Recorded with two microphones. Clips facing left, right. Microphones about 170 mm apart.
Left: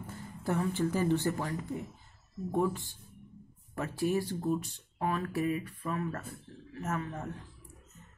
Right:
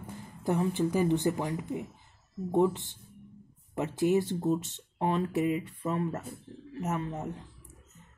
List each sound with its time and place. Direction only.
0.0 s speech: 15° right (ahead or behind)